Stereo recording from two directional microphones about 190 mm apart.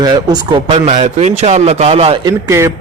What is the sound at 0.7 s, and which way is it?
A man's voice, 35° right (ahead or behind).